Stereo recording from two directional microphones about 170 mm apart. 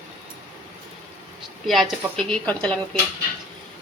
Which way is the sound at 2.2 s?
5° left (ahead or behind).